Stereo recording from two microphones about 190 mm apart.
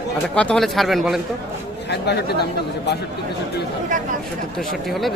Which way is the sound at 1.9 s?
60° left (ahead or behind).